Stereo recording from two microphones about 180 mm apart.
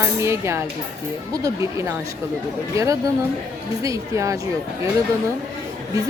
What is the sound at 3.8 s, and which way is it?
Speech, 15° right (ahead or behind).